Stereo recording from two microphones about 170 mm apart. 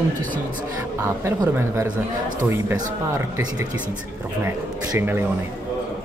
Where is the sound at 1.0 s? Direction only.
15° right (ahead or behind).